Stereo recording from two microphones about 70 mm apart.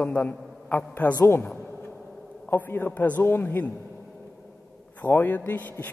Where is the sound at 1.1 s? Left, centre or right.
Left.